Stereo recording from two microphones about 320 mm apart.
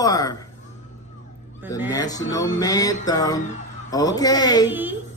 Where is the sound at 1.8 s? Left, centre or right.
Centre.